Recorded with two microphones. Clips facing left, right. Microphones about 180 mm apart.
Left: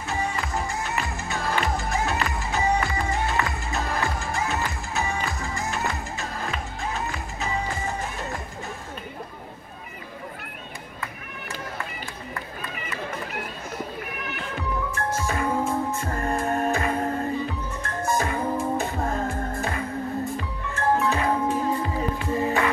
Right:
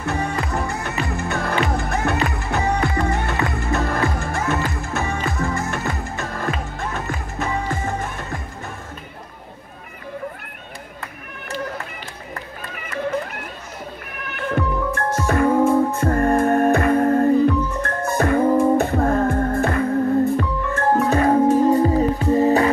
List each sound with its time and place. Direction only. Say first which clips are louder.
0.0 s music: right 5 dB; 60° right (ahead or behind)
12.7 s run: right 8 dB; 50° right (ahead or behind)
14.2 s music: right 12 dB; 55° right (ahead or behind); by 22.7 s 35° right (ahead or behind)